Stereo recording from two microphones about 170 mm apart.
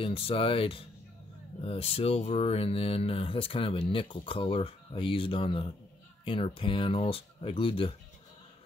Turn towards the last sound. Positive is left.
turn(degrees=30)  # may be behind; listen again after turning